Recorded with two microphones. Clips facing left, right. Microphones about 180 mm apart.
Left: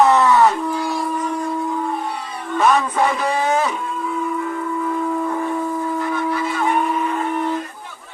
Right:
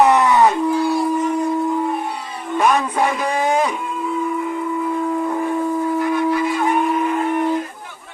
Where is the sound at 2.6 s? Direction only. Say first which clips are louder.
Even; 15° right (ahead or behind).